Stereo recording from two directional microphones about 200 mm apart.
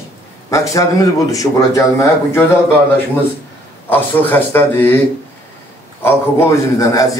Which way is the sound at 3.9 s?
10° left (ahead or behind).